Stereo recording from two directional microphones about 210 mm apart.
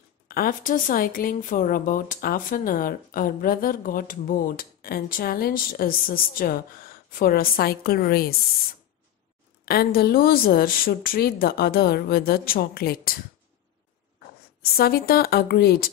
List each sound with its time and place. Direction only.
0.3 s speech: 40° left (ahead or behind)
9.7 s speech: 45° left (ahead or behind)
14.7 s speech: 45° left (ahead or behind)